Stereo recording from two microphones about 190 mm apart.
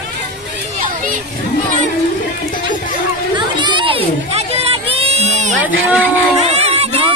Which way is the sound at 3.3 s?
25° right (ahead or behind).